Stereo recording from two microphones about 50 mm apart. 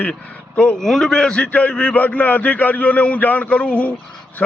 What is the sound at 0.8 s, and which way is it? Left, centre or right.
A man's voice, centre.